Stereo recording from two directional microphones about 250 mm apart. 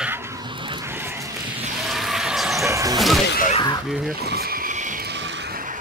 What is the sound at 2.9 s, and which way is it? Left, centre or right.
Speech, centre.